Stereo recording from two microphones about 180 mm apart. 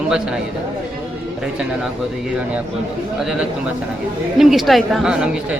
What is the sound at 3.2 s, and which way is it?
A man's voice, centre (ahead or behind).